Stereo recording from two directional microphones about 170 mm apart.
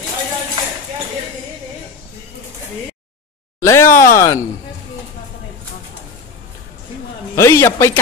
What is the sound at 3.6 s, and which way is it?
Speech, 15° left (ahead or behind).